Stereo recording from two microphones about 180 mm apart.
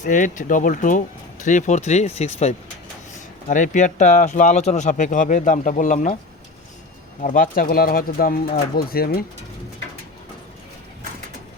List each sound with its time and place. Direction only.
0.0 s speech: 45° left (ahead or behind)
7.2 s speech: 45° left (ahead or behind)